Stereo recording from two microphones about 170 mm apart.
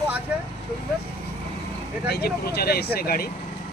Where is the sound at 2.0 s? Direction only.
70° left (ahead or behind).